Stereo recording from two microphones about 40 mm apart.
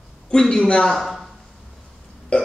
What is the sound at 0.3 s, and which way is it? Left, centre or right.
Speech, centre.